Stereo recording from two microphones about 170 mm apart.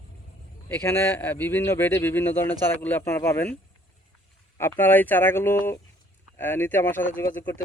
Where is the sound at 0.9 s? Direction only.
10° left (ahead or behind).